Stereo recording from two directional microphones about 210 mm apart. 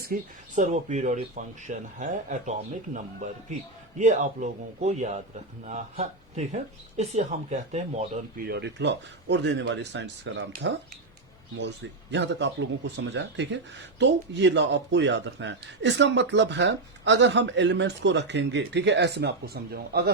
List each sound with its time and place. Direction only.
0.0 s speech: 40° right (ahead or behind)
8.4 s speech: 50° right (ahead or behind)
12.1 s speech: 60° right (ahead or behind)